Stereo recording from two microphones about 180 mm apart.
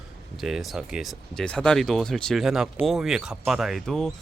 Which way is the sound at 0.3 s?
Centre (ahead or behind).